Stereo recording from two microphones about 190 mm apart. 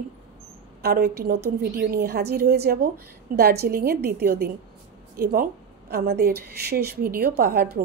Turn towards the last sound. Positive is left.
turn(degrees=-55)  # may be behind; listen again after turning